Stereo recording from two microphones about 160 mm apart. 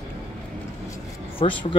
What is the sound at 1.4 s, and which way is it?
Speech, 30° left (ahead or behind).